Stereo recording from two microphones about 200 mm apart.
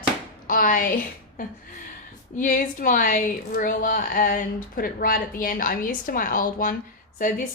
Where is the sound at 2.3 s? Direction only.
40° left (ahead or behind).